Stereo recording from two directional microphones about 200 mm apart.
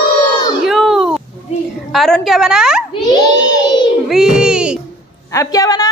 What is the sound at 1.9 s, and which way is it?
Speech, centre (ahead or behind).